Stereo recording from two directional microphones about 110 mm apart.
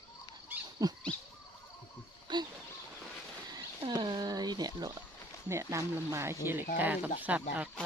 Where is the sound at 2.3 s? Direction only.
45° right (ahead or behind).